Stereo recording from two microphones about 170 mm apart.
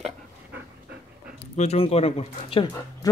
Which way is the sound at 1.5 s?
40° left (ahead or behind).